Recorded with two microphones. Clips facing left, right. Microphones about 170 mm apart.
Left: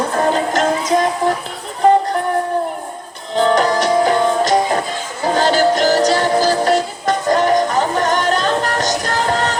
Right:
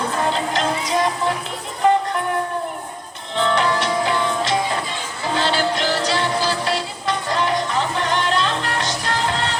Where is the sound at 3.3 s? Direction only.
40° left (ahead or behind).